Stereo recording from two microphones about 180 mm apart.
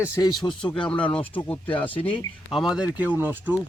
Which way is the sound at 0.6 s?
5° left (ahead or behind).